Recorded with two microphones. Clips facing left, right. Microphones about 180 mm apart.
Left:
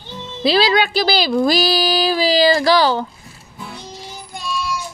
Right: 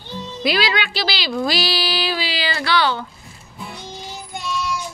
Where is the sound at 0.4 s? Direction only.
30° left (ahead or behind).